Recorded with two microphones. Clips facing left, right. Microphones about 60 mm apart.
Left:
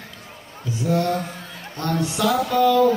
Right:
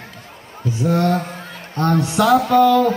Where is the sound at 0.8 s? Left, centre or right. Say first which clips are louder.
Right 3 dB; right.